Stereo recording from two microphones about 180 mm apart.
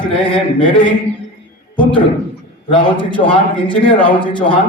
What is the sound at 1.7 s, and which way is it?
A man's voice, 25° left (ahead or behind).